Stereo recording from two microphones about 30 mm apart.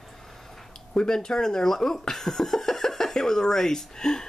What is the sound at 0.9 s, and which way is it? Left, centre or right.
Speech, left.